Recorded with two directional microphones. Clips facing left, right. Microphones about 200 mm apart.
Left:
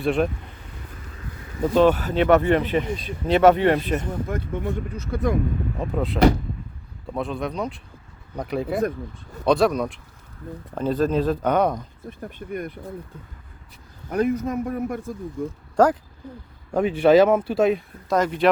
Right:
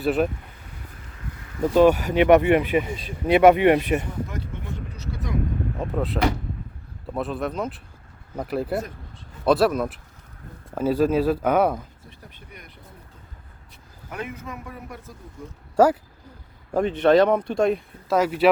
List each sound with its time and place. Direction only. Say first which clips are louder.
0.0 s speech: even; 5° right (ahead or behind)
1.7 s speech: right 1 dB; 10° right (ahead or behind)
4.3 s speech: left 7 dB; 55° left (ahead or behind)
5.8 s speech: left 5 dB; centre (ahead or behind)
12.0 s speech: left 12 dB; 50° left (ahead or behind)
14.1 s speech: left 12 dB; 40° left (ahead or behind)
15.7 s speech: right 1 dB; 10° right (ahead or behind)
16.7 s speech: left 2 dB; 5° left (ahead or behind)